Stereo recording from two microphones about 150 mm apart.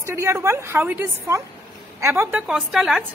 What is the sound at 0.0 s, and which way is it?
A woman's voice, 20° right (ahead or behind).